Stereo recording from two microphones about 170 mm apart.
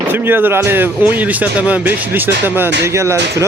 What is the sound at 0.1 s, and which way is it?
Speech, 10° right (ahead or behind).